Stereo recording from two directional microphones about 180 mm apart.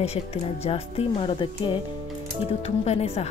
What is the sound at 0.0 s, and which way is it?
Music, 35° left (ahead or behind).